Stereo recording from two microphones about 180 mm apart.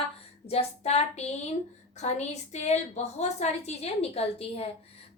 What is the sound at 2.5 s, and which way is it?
Speech, 40° left (ahead or behind).